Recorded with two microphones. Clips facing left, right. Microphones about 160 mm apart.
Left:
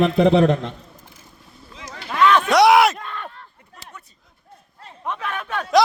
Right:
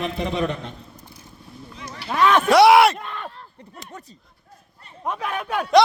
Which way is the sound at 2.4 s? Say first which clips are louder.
Right 3 dB; centre (ahead or behind).